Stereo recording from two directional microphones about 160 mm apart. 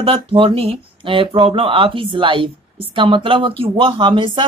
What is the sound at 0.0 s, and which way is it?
Speech, 35° right (ahead or behind).